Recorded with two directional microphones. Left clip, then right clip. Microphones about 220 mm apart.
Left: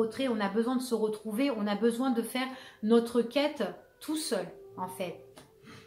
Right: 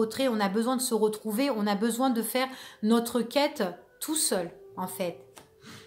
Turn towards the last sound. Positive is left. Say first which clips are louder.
# right 3 dB
turn(degrees=-45)  # may be behind; listen again after turning